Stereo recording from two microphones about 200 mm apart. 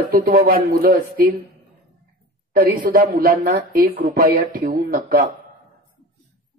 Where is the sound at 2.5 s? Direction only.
45° right (ahead or behind).